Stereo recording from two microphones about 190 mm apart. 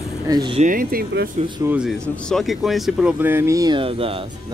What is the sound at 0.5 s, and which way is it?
Speech, 45° right (ahead or behind).